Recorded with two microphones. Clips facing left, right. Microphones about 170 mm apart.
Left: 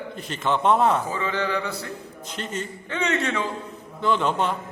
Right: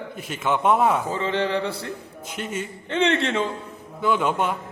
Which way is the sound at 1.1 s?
25° right (ahead or behind).